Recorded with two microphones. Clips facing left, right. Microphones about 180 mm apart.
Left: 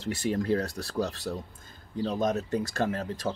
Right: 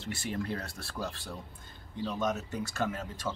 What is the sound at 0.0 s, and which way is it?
Speech, 40° left (ahead or behind).